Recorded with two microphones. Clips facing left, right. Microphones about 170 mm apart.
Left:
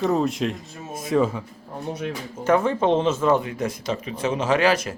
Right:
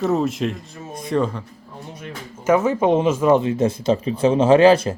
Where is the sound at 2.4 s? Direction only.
5° right (ahead or behind).